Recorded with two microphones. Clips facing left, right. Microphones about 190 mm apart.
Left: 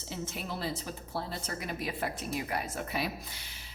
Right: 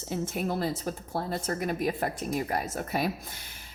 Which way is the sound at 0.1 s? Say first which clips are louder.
Right 8 dB; 50° right (ahead or behind).